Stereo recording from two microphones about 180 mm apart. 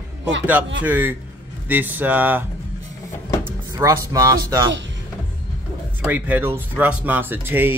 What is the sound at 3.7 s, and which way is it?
Speech, 20° right (ahead or behind).